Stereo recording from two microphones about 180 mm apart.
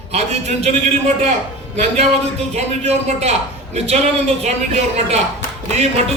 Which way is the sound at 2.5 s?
40° right (ahead or behind).